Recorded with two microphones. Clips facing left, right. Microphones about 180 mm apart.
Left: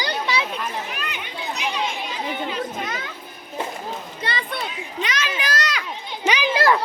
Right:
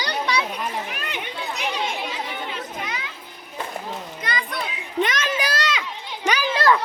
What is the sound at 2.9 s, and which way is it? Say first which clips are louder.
Children playing: left 2 dB; 50° left (ahead or behind).